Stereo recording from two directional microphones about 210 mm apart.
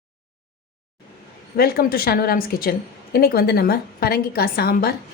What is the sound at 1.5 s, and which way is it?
Speech, 45° left (ahead or behind).